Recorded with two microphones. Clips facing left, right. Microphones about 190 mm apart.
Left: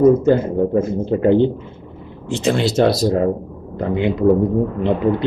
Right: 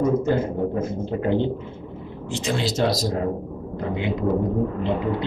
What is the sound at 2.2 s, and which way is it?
Speech, 60° left (ahead or behind).